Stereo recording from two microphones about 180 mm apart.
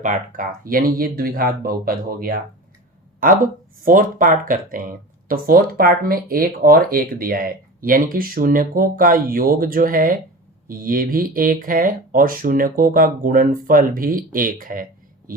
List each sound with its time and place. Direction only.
0.0 s speech: 45° right (ahead or behind)